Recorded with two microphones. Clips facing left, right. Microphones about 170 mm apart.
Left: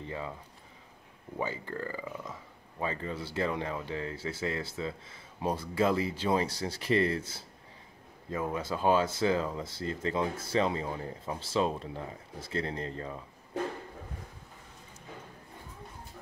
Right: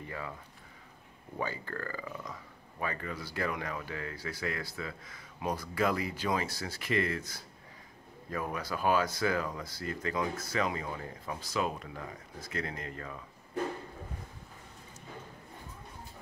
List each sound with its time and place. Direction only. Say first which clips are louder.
0.0 s speech: left 3 dB; 25° left (ahead or behind)
1.4 s speech: left 2 dB; 20° left (ahead or behind)